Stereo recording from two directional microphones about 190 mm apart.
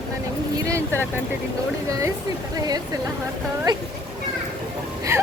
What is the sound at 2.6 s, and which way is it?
Speech, 20° right (ahead or behind).